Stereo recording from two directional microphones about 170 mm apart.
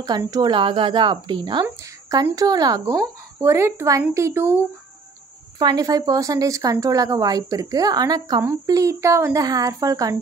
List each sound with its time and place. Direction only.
0.2 s a woman's voice: 20° right (ahead or behind)